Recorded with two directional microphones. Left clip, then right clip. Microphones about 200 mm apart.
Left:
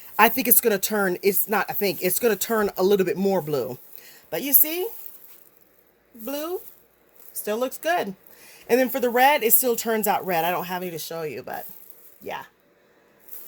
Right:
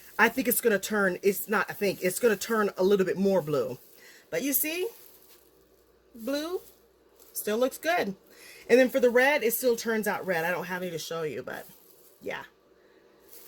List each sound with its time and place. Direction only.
0.2 s a woman's voice: 40° left (ahead or behind)
6.2 s a woman's voice: 20° left (ahead or behind)